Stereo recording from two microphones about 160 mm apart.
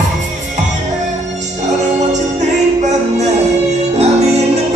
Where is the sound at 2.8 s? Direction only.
45° right (ahead or behind).